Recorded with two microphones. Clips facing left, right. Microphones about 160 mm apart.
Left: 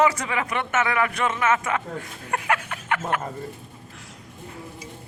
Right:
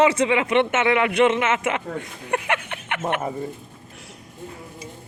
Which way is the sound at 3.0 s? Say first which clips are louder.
Right 7 dB; 20° right (ahead or behind).